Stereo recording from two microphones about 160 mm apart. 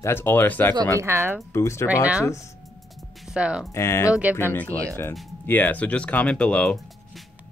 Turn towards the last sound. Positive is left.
turn(degrees=5)  # may be behind; listen again after turning